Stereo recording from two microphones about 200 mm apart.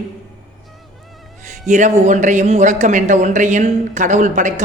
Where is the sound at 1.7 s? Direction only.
35° right (ahead or behind).